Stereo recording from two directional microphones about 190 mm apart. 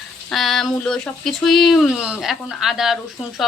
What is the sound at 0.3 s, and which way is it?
Speech, centre (ahead or behind).